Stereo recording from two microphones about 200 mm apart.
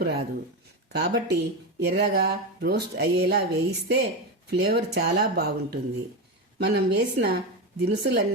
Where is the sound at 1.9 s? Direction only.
55° right (ahead or behind).